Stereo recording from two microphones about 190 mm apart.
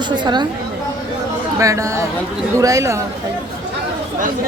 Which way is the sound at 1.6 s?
15° right (ahead or behind).